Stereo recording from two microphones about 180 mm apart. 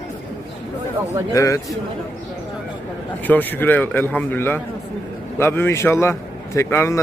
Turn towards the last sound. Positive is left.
turn(degrees=15)  # may be behind; listen again after turning